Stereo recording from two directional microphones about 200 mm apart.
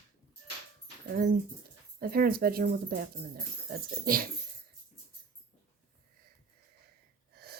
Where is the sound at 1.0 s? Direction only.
50° right (ahead or behind).